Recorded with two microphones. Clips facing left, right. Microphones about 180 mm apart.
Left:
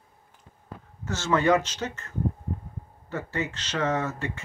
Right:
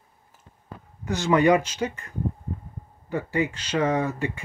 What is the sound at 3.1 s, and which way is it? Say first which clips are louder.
Speech: right 5 dB; 10° right (ahead or behind).